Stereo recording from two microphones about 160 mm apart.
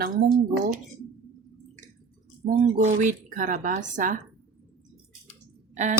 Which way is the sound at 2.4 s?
50° right (ahead or behind).